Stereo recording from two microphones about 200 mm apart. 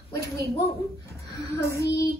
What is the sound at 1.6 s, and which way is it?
Child singing, 15° left (ahead or behind).